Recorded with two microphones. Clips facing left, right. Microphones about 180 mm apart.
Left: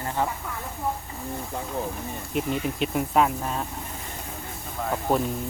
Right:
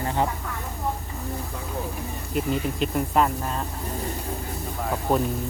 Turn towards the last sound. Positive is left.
turn(degrees=0)  # may be behind; listen again after turning